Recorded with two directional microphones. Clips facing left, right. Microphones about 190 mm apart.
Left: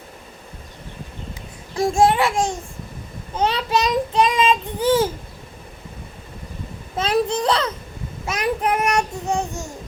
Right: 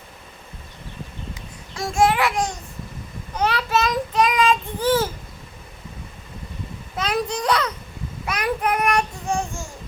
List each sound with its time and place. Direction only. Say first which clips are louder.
1.7 s child singing: left 3 dB; 30° left (ahead or behind)
6.9 s child singing: left 4 dB; 25° left (ahead or behind)